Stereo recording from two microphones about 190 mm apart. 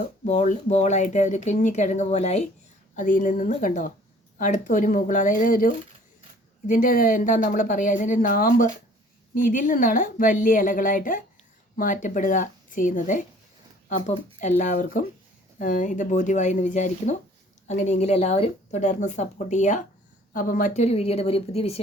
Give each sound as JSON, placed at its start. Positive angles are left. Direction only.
{"t": 0.3, "sound": "speech", "side_deg": 40}
{"t": 14.6, "sound": "speech", "side_deg": 45}